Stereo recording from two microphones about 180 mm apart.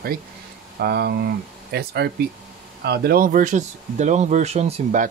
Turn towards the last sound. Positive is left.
turn(degrees=-40)  # may be behind; listen again after turning